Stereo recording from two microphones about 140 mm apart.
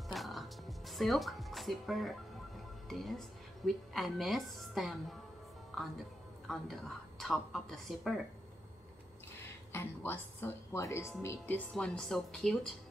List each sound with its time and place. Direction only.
0.1 s speech: centre (ahead or behind)
5.7 s music: centre (ahead or behind)
6.5 s speech: centre (ahead or behind)
9.7 s speech: 15° left (ahead or behind)